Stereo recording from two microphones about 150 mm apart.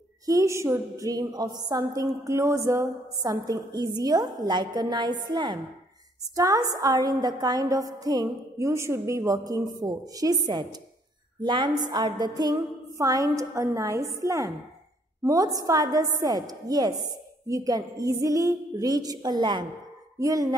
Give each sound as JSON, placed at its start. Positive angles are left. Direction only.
{"t": 0.3, "sound": "a woman's voice", "side_deg": -20}